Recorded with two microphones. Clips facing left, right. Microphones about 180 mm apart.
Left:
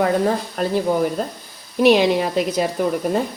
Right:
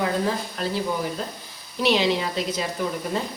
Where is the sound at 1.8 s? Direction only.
50° left (ahead or behind).